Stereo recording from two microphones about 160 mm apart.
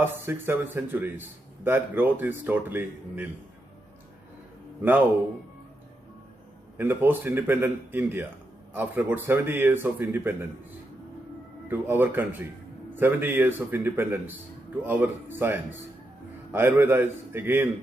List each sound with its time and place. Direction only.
0.0 s a man's voice: 15° right (ahead or behind)
6.8 s a man's voice: 15° right (ahead or behind)
11.7 s a man's voice: 10° right (ahead or behind)